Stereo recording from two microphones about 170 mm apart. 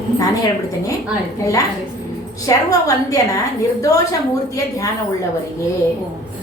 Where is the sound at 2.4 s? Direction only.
20° left (ahead or behind).